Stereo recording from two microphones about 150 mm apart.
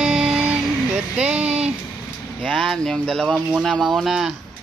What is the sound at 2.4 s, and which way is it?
Speech, 5° left (ahead or behind).